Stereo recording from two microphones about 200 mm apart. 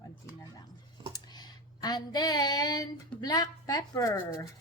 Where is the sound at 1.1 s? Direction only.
20° left (ahead or behind).